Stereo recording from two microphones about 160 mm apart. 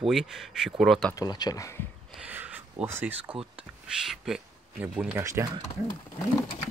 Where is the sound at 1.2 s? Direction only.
25° left (ahead or behind).